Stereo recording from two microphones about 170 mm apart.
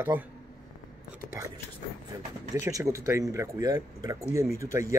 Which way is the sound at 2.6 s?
20° right (ahead or behind).